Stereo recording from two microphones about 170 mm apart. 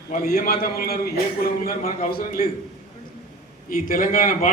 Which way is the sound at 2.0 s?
55° left (ahead or behind).